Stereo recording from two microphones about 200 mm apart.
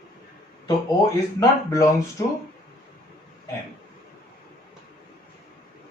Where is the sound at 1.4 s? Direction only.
15° left (ahead or behind).